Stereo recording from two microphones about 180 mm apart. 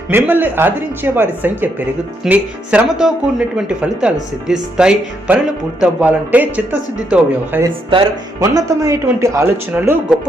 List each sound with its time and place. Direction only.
0.3 s speech: 10° right (ahead or behind)
7.9 s speech: 25° right (ahead or behind)